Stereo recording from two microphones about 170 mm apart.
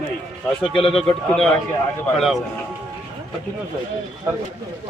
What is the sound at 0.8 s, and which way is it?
Speech, 35° left (ahead or behind).